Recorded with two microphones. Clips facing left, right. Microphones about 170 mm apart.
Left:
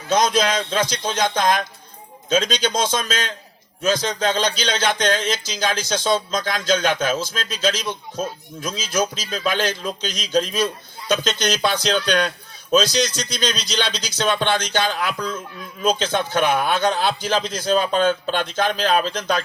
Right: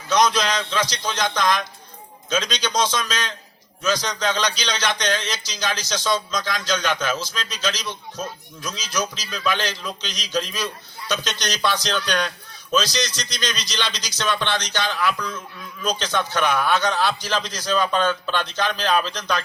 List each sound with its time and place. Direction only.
0.1 s a man's voice: 50° left (ahead or behind)